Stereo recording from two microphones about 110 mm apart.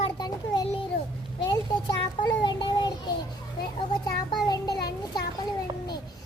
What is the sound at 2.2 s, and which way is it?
Child singing, 45° left (ahead or behind).